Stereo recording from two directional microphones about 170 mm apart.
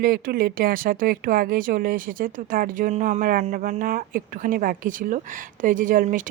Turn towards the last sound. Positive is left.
turn(degrees=-50)  # may be behind; listen again after turning